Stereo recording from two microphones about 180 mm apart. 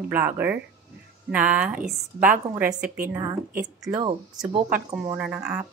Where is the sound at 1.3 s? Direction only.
5° right (ahead or behind).